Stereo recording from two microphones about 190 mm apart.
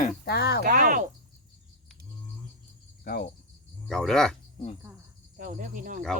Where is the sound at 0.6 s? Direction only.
45° right (ahead or behind).